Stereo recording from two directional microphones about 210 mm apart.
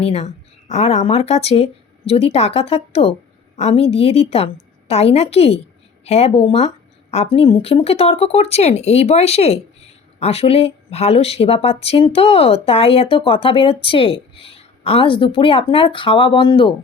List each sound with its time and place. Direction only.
0.0 s speech: 30° left (ahead or behind)